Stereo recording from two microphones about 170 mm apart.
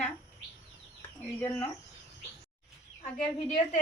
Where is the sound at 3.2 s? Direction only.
40° left (ahead or behind).